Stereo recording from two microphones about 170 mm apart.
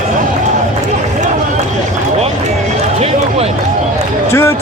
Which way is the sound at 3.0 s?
40° right (ahead or behind).